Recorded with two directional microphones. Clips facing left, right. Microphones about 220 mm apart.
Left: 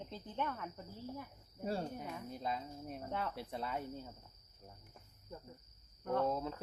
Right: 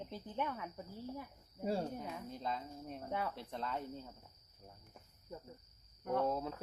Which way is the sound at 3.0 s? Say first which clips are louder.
Right 1 dB; 10° right (ahead or behind).